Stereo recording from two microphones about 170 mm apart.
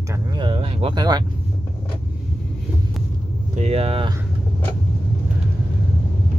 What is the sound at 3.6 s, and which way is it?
Speech, 40° right (ahead or behind).